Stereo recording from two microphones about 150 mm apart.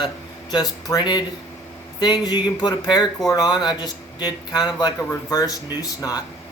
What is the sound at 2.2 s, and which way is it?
Speech, 30° left (ahead or behind).